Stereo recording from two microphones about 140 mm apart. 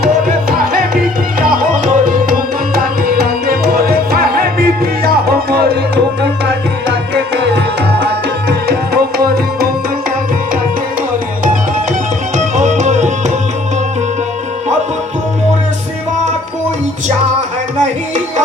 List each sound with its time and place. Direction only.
0.0 s music: 90° right; by 2.1 s 70° right (ahead or behind)
2.7 s tabla: 90° right
8.6 s music: 90° right
12.5 s music: 55° right (ahead or behind)